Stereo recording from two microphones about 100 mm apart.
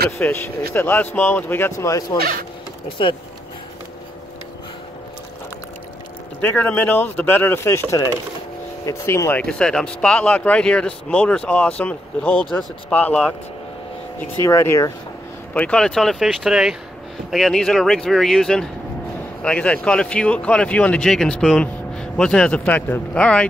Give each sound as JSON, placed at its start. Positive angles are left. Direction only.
{"t": 0.2, "sound": "speech", "side_deg": 20}
{"t": 6.4, "sound": "speech", "side_deg": 15}
{"t": 9.3, "sound": "speech", "side_deg": 10}
{"t": 14.2, "sound": "speech", "side_deg": 30}
{"t": 15.5, "sound": "speech", "side_deg": 10}